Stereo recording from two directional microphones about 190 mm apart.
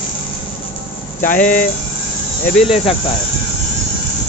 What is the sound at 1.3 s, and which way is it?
Speech, 5° left (ahead or behind).